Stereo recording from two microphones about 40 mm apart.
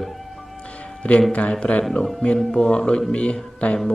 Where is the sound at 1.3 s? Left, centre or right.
Left.